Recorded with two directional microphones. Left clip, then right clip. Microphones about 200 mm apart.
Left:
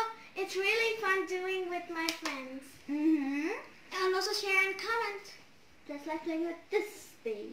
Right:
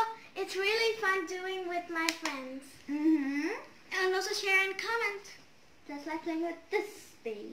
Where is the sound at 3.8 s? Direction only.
10° right (ahead or behind).